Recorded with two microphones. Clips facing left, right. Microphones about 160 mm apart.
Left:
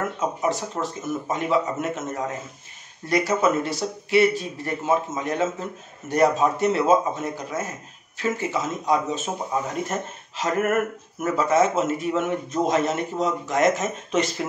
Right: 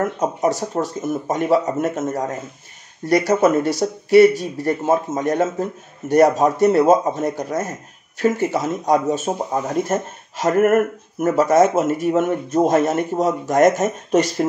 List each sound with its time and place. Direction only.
0.2 s speech: 40° right (ahead or behind)